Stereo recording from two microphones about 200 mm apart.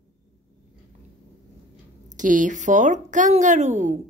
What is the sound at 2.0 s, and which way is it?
A woman's voice, 40° right (ahead or behind).